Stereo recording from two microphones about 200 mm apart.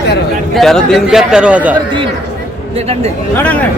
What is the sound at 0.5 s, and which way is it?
Speech, centre (ahead or behind).